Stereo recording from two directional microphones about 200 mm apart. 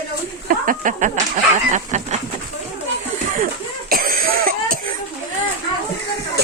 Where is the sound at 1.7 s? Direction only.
35° right (ahead or behind).